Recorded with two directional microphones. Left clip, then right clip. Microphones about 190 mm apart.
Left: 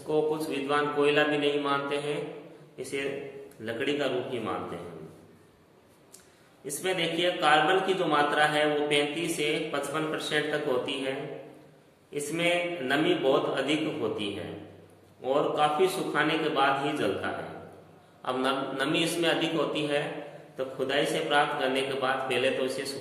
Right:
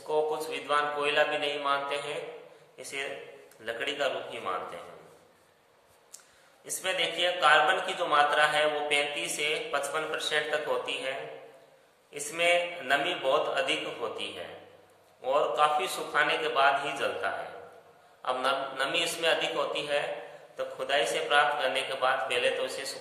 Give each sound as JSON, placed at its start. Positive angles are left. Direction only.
{"t": 0.1, "sound": "a man's voice", "side_deg": -20}
{"t": 6.6, "sound": "a man's voice", "side_deg": -25}
{"t": 12.1, "sound": "a man's voice", "side_deg": -20}
{"t": 15.2, "sound": "a man's voice", "side_deg": -20}